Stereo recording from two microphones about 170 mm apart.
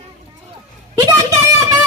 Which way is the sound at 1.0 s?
20° right (ahead or behind).